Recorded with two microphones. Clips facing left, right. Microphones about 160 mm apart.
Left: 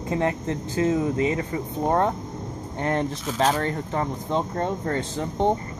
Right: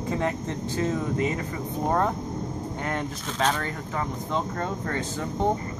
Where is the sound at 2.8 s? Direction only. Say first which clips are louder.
Left 8 dB; 35° left (ahead or behind).